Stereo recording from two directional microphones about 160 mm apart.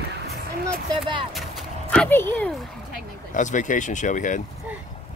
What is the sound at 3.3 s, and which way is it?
Speech, 50° left (ahead or behind).